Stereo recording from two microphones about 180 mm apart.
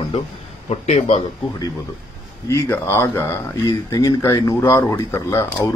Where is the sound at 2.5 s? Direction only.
15° left (ahead or behind).